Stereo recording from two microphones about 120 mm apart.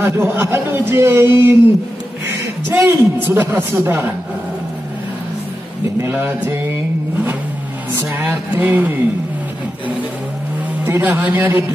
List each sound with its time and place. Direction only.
0.0 s speech: 20° right (ahead or behind)
2.7 s a woman's voice: 20° right (ahead or behind)
5.9 s a woman's voice: 20° right (ahead or behind)
8.0 s a woman's voice: 20° right (ahead or behind)
10.9 s a woman's voice: 15° right (ahead or behind)